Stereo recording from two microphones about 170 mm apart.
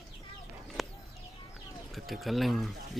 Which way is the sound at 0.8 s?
Centre (ahead or behind).